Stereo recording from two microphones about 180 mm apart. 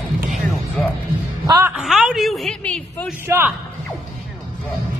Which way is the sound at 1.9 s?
Centre (ahead or behind).